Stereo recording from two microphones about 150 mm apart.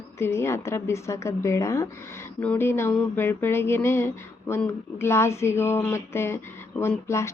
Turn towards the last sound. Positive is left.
turn(degrees=20)  # may be behind; listen again after turning